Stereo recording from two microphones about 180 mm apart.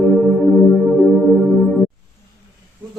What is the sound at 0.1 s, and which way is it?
Music, centre (ahead or behind).